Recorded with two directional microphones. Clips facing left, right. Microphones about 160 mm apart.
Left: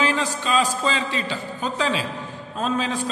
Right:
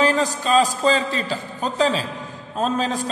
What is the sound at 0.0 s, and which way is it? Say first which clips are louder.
A man's voice: right 4 dB; 40° right (ahead or behind).